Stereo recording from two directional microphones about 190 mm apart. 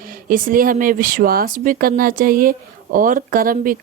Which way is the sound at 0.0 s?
50° right (ahead or behind).